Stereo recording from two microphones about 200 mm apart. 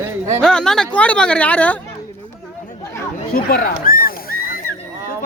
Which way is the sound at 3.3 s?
50° left (ahead or behind).